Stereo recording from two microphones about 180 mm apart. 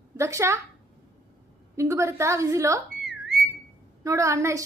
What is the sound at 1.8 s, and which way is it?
A woman's voice, 15° right (ahead or behind).